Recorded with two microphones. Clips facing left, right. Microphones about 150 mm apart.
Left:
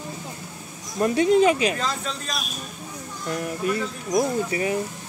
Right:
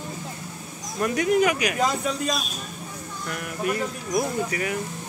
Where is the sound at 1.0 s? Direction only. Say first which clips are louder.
Left 3 dB; 25° left (ahead or behind).